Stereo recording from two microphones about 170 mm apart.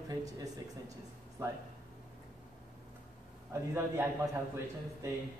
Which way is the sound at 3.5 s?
15° right (ahead or behind).